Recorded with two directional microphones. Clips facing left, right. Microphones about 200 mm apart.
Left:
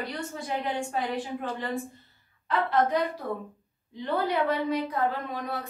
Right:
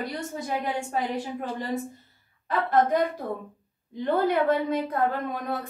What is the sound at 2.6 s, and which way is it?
A woman's voice, 50° right (ahead or behind).